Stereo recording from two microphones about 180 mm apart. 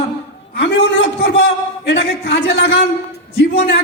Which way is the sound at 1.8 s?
70° left (ahead or behind).